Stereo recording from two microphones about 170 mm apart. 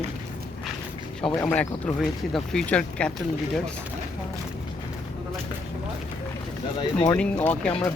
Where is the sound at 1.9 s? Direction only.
Centre (ahead or behind).